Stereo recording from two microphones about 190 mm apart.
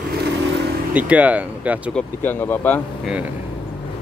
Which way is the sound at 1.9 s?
10° left (ahead or behind).